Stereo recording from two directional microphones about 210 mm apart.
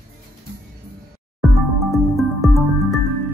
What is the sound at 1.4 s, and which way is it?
Music, centre (ahead or behind).